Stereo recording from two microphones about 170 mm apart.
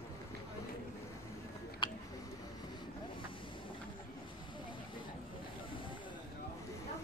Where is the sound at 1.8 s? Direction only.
30° left (ahead or behind).